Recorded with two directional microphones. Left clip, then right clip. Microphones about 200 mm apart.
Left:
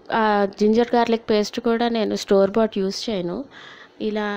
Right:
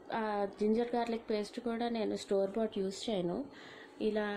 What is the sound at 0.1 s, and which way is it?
A woman's voice, 35° left (ahead or behind).